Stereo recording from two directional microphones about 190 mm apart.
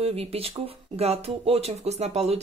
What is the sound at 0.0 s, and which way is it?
Speech, 30° right (ahead or behind).